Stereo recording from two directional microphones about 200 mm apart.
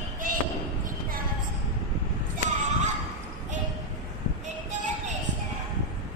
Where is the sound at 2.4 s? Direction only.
40° right (ahead or behind).